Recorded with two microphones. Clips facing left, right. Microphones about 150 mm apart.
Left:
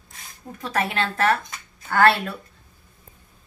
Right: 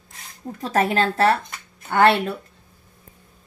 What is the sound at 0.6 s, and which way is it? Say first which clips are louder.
A woman's voice: right 5 dB; 40° right (ahead or behind).